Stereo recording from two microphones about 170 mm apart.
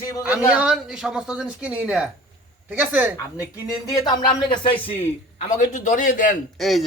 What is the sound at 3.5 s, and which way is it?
Speech, 20° left (ahead or behind).